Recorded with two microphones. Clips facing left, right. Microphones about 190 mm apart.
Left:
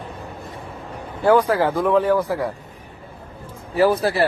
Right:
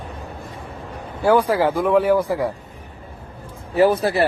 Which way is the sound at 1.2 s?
10° right (ahead or behind).